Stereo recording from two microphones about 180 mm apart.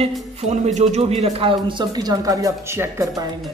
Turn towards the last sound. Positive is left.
turn(degrees=-15)  # may be behind; listen again after turning